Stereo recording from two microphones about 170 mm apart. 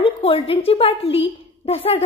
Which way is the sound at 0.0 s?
35° left (ahead or behind).